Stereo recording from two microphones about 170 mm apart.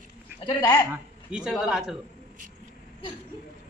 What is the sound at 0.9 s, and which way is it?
Speech, 5° right (ahead or behind).